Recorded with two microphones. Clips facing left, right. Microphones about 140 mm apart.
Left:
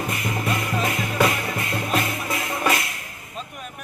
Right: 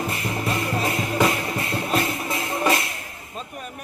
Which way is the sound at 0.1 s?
30° right (ahead or behind).